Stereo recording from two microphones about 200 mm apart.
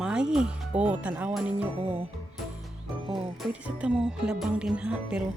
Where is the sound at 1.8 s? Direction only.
30° right (ahead or behind).